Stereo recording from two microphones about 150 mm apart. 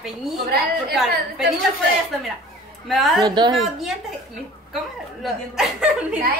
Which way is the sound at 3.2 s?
30° right (ahead or behind).